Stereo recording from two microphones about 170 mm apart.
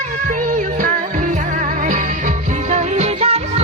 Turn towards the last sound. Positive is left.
turn(degrees=-35)  # may be behind; listen again after turning